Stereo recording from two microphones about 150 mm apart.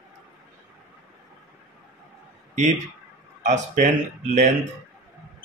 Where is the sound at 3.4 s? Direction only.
50° right (ahead or behind).